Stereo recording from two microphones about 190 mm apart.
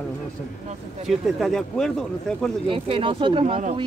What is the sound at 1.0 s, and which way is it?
Speech, centre (ahead or behind).